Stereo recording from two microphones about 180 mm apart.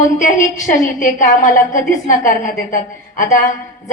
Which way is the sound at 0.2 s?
45° left (ahead or behind).